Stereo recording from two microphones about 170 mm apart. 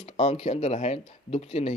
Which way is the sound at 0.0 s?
40° left (ahead or behind).